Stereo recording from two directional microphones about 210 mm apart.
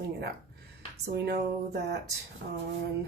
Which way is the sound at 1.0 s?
50° right (ahead or behind).